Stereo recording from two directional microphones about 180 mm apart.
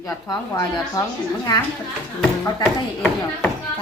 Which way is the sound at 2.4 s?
15° left (ahead or behind).